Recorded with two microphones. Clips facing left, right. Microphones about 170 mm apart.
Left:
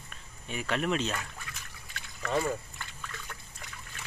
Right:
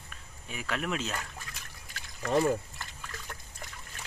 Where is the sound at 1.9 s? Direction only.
45° right (ahead or behind).